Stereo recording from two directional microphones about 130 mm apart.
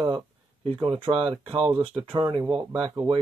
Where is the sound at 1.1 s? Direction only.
45° right (ahead or behind).